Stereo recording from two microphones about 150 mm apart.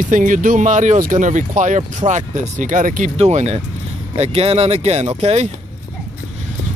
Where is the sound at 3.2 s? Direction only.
50° right (ahead or behind).